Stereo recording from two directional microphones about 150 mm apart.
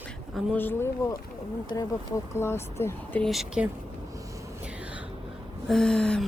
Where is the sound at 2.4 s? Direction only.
15° left (ahead or behind).